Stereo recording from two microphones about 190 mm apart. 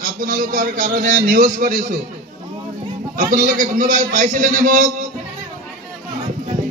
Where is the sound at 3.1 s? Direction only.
45° right (ahead or behind).